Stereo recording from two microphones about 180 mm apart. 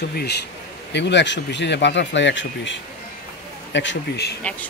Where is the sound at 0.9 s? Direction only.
75° left (ahead or behind).